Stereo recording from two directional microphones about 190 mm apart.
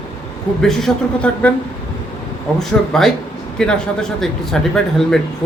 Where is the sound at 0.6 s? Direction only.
5° left (ahead or behind).